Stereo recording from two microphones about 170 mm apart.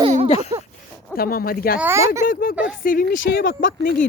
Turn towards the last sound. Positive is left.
turn(degrees=65)  # may be behind; listen again after turning